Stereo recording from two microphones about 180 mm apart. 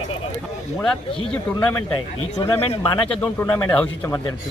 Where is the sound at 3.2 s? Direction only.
15° left (ahead or behind).